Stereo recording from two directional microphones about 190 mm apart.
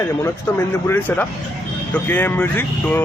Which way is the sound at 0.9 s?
10° left (ahead or behind).